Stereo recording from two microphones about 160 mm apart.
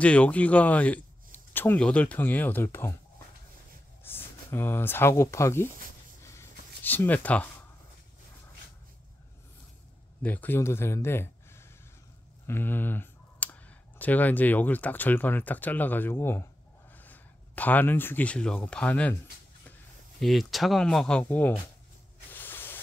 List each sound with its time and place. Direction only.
0.0 s speech: 10° left (ahead or behind)
4.0 s speech: 15° left (ahead or behind)
6.2 s writing: 15° left (ahead or behind)
10.2 s speech: 10° left (ahead or behind)
20.2 s speech: centre (ahead or behind)
22.3 s spray: 10° left (ahead or behind)